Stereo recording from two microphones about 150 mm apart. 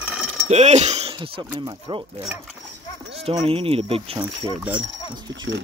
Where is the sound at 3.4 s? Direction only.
40° right (ahead or behind).